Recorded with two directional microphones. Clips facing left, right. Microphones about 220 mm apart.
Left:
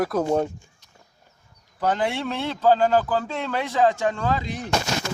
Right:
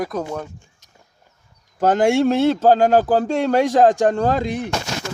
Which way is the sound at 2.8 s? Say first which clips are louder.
Right 5 dB; 65° right (ahead or behind).